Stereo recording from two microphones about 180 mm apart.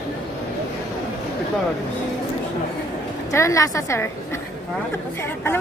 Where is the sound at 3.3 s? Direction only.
15° left (ahead or behind).